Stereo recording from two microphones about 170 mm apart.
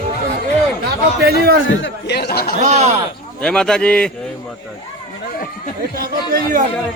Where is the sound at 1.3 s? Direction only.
65° right (ahead or behind).